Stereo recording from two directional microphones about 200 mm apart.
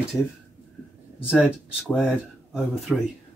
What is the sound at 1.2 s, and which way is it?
Speech, 5° right (ahead or behind).